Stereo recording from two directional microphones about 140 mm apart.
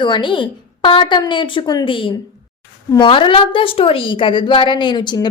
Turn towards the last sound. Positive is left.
turn(degrees=30)  # may be behind; listen again after turning